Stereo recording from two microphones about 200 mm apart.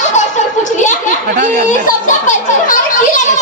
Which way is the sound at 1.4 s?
40° right (ahead or behind).